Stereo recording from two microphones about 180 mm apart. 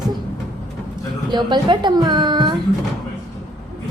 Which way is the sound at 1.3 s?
25° right (ahead or behind).